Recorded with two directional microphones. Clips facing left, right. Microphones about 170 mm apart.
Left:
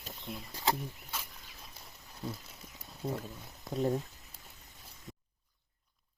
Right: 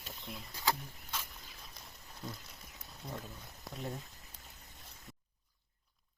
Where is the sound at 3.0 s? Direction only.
35° left (ahead or behind).